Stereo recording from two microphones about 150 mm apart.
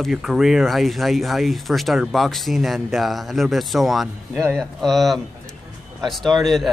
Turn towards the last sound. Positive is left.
turn(degrees=0)  # may be behind; listen again after turning